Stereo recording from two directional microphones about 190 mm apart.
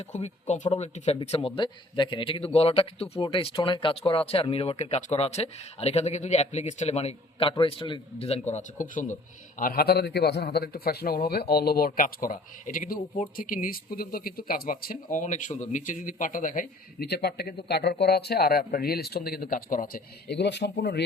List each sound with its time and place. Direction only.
0.1 s a man's voice: 35° left (ahead or behind); by 21.0 s 60° left (ahead or behind)